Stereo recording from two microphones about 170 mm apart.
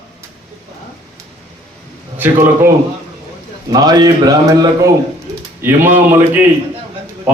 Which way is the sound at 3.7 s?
20° right (ahead or behind).